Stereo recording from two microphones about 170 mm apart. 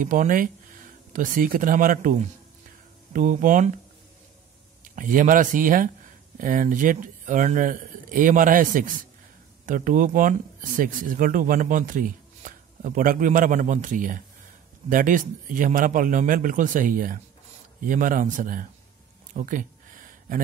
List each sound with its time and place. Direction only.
0.0 s speech: 50° right (ahead or behind)
4.8 s speech: 50° right (ahead or behind)
19.3 s a sound: 50° right (ahead or behind)